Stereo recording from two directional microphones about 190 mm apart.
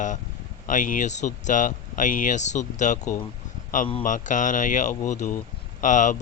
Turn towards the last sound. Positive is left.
turn(degrees=40)  # may be behind; listen again after turning